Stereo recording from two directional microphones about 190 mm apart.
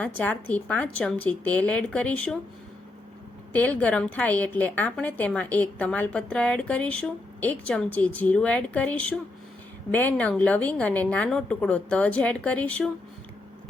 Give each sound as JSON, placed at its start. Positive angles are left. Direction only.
{"t": 0.2, "sound": "a woman's voice", "side_deg": 10}
{"t": 3.5, "sound": "a woman's voice", "side_deg": 10}